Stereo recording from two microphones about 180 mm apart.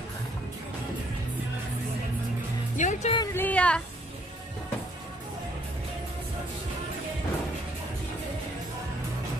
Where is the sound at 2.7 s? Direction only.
45° left (ahead or behind).